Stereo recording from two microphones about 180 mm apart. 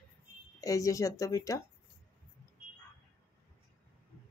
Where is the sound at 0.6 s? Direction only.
20° left (ahead or behind).